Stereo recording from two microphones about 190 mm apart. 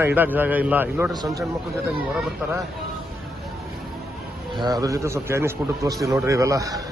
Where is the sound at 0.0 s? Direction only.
10° right (ahead or behind).